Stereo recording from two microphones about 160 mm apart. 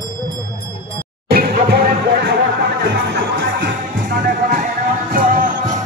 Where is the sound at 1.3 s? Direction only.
85° right.